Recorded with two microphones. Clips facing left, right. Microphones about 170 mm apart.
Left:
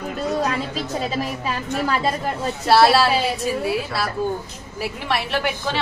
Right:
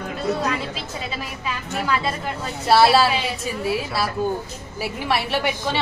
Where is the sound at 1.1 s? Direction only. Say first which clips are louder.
Left 5 dB; 40° left (ahead or behind).